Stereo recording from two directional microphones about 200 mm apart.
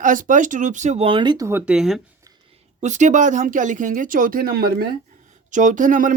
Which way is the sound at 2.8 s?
35° right (ahead or behind).